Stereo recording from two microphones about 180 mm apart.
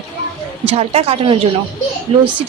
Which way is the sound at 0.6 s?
35° right (ahead or behind).